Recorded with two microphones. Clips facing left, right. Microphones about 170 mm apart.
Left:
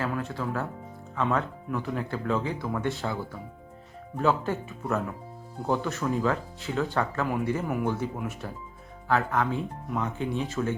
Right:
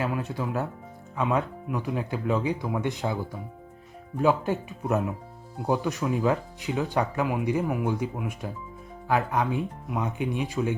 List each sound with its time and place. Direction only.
0.0 s speech: 15° right (ahead or behind)
4.2 s speech: 15° right (ahead or behind)